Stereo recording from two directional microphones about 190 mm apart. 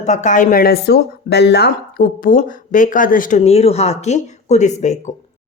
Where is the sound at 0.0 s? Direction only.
40° left (ahead or behind).